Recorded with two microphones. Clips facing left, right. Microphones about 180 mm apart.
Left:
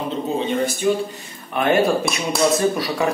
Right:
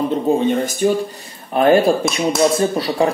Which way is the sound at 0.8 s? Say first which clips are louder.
Right 4 dB; 50° right (ahead or behind).